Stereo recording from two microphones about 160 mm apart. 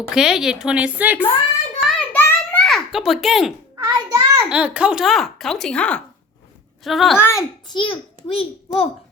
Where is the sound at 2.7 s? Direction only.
Centre (ahead or behind).